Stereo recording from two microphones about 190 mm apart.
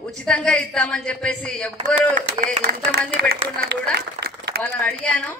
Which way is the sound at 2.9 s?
65° right (ahead or behind).